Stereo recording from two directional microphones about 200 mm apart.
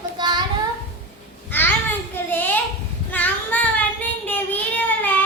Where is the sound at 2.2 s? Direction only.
10° left (ahead or behind).